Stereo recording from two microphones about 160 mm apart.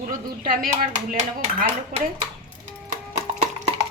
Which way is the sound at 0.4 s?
60° right (ahead or behind).